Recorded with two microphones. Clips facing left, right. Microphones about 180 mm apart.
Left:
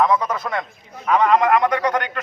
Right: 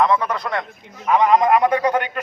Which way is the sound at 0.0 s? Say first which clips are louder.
Even; 10° left (ahead or behind).